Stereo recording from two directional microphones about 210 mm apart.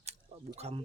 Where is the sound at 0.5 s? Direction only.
30° right (ahead or behind).